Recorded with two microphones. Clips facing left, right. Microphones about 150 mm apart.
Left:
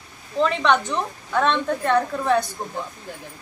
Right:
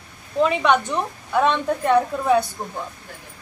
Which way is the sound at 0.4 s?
10° right (ahead or behind).